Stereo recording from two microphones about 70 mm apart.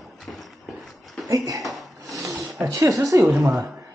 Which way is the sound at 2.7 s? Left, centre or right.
Right.